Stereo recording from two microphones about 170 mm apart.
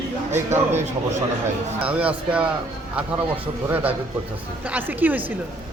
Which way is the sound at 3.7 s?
10° right (ahead or behind).